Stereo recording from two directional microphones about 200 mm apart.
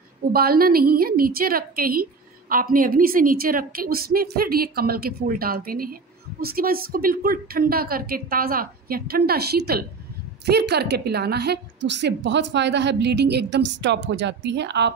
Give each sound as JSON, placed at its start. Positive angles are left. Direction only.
{"t": 0.3, "sound": "a woman's voice", "side_deg": -50}